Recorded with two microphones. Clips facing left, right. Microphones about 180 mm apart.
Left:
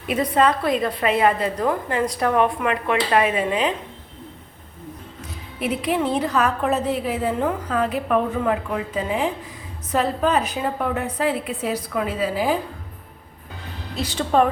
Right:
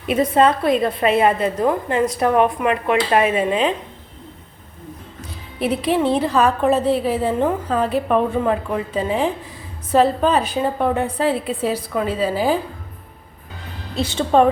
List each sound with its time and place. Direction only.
0.1 s a woman's voice: 25° right (ahead or behind)
5.5 s a woman's voice: 30° right (ahead or behind)
13.9 s a woman's voice: 25° right (ahead or behind)